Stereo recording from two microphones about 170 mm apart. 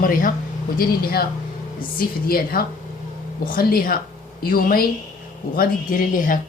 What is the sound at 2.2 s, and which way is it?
Speech, 60° left (ahead or behind).